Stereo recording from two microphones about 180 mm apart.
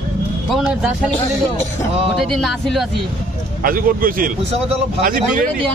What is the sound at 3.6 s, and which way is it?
A man's voice, 50° right (ahead or behind).